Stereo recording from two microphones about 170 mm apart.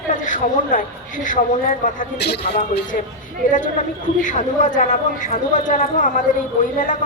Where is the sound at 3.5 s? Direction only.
50° left (ahead or behind).